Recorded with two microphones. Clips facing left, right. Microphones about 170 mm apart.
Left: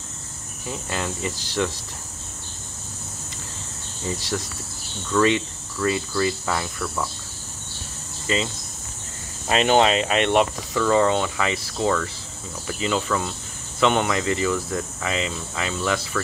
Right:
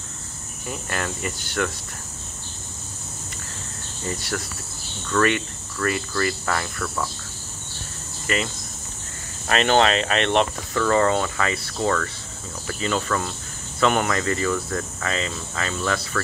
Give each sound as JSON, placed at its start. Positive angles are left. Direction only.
{"t": 0.8, "sound": "speech", "side_deg": 15}
{"t": 5.1, "sound": "speech", "side_deg": 5}
{"t": 9.5, "sound": "speech", "side_deg": 15}